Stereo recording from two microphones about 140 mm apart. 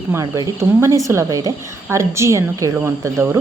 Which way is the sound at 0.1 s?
20° right (ahead or behind).